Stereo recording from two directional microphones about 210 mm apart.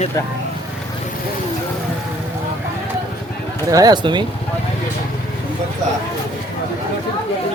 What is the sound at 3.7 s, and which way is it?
Speech, 20° right (ahead or behind).